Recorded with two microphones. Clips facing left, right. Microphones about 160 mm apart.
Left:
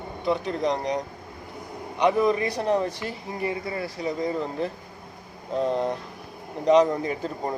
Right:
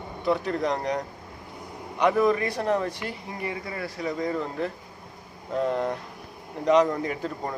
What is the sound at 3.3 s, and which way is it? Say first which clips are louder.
Speech: left 6 dB; 30° left (ahead or behind).